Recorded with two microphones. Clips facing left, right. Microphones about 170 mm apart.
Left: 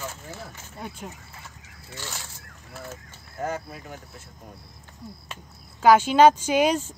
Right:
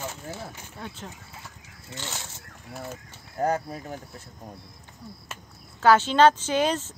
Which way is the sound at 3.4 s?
35° right (ahead or behind).